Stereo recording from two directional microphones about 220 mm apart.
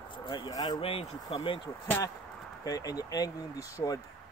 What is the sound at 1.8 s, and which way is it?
Speech, 10° left (ahead or behind).